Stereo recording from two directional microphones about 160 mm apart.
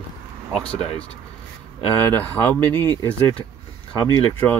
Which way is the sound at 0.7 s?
40° left (ahead or behind).